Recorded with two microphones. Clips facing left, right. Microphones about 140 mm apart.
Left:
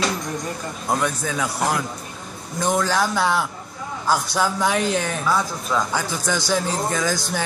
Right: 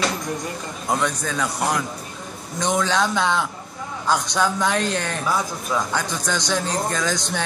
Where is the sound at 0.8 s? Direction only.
5° left (ahead or behind).